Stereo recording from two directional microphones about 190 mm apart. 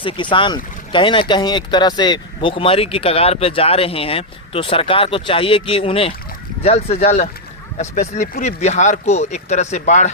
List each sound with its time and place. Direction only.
0.0 s speech: 25° left (ahead or behind)